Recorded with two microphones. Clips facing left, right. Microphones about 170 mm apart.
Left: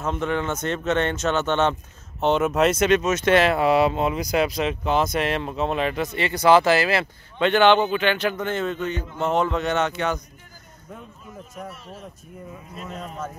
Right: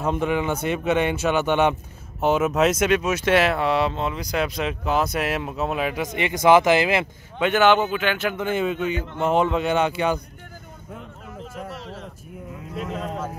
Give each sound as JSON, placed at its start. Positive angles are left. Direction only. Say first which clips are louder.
{"t": 0.0, "sound": "speech", "louder": "right 2 dB", "side_deg": -10}
{"t": 3.6, "sound": "speech", "louder": "left 3 dB", "side_deg": 10}
{"t": 11.7, "sound": "speech", "louder": "right 4 dB", "side_deg": -80}